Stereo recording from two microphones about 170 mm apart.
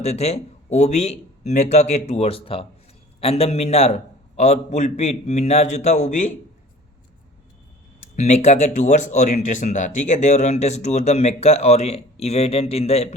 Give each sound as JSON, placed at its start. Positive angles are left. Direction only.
{"t": 0.0, "sound": "speech", "side_deg": 40}
{"t": 8.1, "sound": "speech", "side_deg": 40}